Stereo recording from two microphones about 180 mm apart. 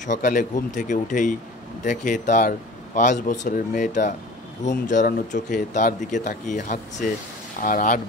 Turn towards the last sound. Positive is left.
turn(degrees=45)  # may be behind; listen again after turning